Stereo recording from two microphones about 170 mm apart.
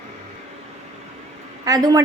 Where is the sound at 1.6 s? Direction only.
20° right (ahead or behind).